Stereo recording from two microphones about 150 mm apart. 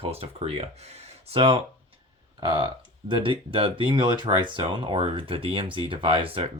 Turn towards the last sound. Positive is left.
turn(degrees=-40)  # may be behind; listen again after turning